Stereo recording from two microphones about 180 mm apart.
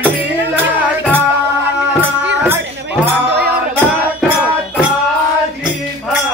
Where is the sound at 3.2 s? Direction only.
65° right (ahead or behind).